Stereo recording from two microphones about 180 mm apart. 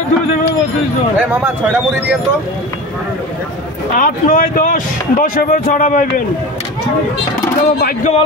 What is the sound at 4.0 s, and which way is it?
A man's voice, 50° left (ahead or behind).